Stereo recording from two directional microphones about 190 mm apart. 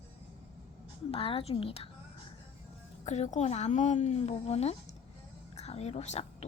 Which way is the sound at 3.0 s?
35° left (ahead or behind).